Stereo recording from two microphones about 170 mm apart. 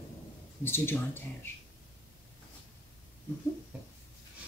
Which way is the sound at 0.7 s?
15° left (ahead or behind).